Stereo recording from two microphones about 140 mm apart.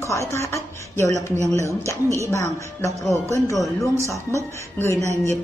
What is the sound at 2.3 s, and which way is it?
A woman's voice, 20° left (ahead or behind).